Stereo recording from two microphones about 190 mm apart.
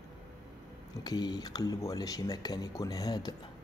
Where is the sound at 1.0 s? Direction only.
20° left (ahead or behind).